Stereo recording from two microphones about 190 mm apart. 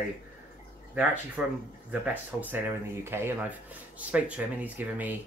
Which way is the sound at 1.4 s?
5° right (ahead or behind).